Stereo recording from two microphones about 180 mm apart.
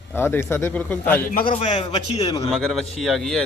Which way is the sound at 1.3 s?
50° left (ahead or behind).